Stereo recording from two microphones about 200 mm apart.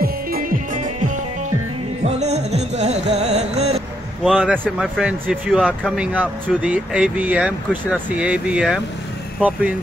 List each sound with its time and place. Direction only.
0.0 s music: 45° right (ahead or behind)
2.0 s music: 35° right (ahead or behind)
4.2 s speech: 5° right (ahead or behind)